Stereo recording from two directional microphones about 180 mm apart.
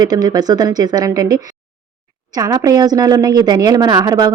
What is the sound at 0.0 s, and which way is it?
A woman's voice, 20° right (ahead or behind).